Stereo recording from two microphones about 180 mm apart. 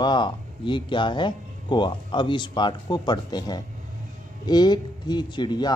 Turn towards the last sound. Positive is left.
turn(degrees=25)  # may be behind; listen again after turning